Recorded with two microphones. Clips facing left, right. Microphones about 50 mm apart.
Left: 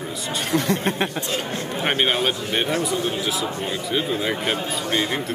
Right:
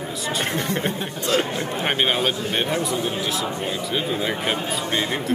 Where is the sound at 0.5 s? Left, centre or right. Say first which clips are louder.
Left 3 dB; left.